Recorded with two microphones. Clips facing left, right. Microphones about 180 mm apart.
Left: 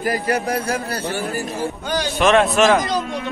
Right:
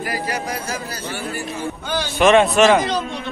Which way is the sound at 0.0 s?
50° left (ahead or behind).